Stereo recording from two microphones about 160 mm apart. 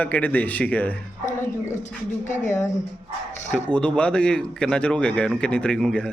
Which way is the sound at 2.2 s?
50° left (ahead or behind).